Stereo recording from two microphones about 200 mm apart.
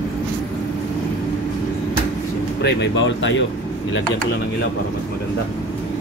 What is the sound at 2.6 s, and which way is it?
Speech, 65° left (ahead or behind).